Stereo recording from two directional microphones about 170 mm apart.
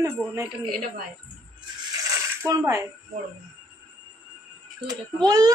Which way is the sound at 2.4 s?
20° right (ahead or behind).